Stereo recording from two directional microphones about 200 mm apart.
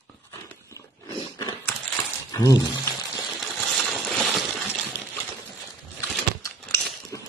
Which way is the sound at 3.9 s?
Centre (ahead or behind).